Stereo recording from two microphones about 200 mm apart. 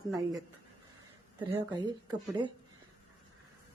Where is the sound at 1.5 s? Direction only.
20° right (ahead or behind).